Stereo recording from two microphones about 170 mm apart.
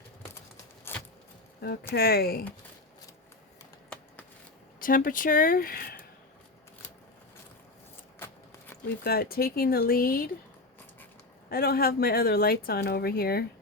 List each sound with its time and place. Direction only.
0.9 s a sound: 15° left (ahead or behind)
2.0 s speech: 65° left (ahead or behind)
4.8 s speech: 55° left (ahead or behind)
8.2 s a sound: 15° left (ahead or behind)
9.0 s speech: 65° left (ahead or behind)
11.5 s speech: 65° left (ahead or behind)